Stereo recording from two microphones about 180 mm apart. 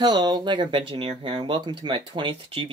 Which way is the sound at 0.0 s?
25° right (ahead or behind).